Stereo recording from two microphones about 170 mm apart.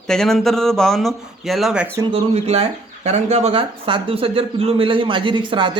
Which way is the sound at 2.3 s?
40° right (ahead or behind).